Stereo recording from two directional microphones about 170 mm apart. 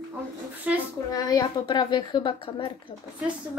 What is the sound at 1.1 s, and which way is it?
A woman's voice, 20° left (ahead or behind).